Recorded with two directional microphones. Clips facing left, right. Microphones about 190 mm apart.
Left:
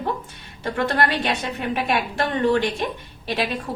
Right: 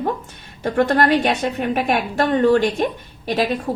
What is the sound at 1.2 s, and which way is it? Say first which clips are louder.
A woman's voice: right 5 dB; 50° right (ahead or behind).